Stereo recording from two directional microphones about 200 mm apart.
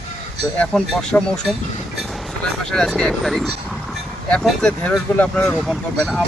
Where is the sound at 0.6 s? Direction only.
5° left (ahead or behind).